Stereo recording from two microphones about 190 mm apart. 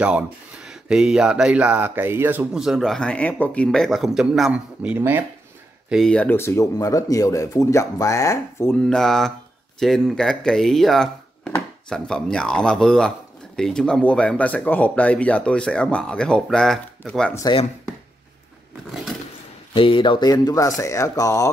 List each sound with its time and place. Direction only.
0.7 s speech: 5° right (ahead or behind)
5.9 s speech: centre (ahead or behind)
17.3 s speech: 15° left (ahead or behind)
19.7 s speech: 25° left (ahead or behind)